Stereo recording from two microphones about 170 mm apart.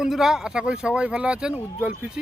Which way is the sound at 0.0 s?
5° right (ahead or behind).